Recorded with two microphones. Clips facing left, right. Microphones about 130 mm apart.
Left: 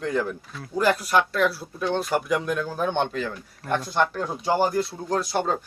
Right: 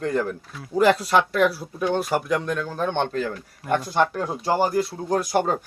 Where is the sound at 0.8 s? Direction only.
25° right (ahead or behind); by 4.9 s 5° right (ahead or behind).